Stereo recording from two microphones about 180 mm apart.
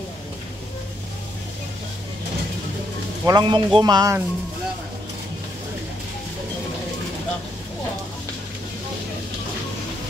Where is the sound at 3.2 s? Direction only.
25° right (ahead or behind).